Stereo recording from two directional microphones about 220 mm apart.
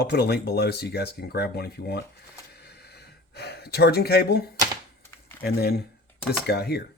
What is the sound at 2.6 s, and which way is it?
Gasp, 45° left (ahead or behind).